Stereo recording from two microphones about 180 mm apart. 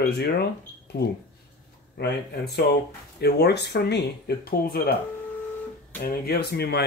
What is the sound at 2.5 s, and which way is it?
Speech, 65° left (ahead or behind).